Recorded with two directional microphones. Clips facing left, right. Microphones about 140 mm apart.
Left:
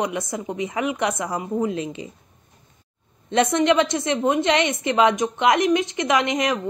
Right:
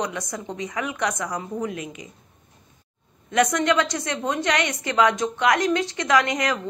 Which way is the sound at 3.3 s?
25° left (ahead or behind).